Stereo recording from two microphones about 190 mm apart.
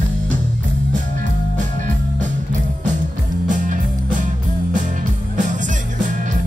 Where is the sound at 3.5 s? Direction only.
40° right (ahead or behind).